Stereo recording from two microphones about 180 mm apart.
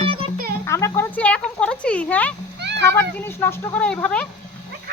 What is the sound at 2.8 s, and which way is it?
Speech, 15° left (ahead or behind).